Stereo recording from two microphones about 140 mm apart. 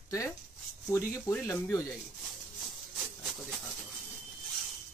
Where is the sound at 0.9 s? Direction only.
15° left (ahead or behind).